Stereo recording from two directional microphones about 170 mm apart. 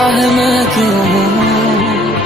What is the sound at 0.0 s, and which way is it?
Music, centre (ahead or behind).